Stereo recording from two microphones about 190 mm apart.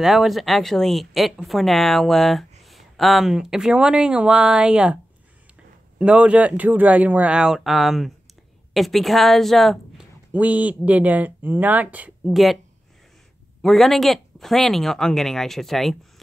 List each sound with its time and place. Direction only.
0.0 s speech: centre (ahead or behind)
5.9 s a woman's voice: 5° right (ahead or behind)
13.6 s speech: centre (ahead or behind)